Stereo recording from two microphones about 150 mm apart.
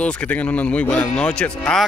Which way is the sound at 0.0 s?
5° left (ahead or behind).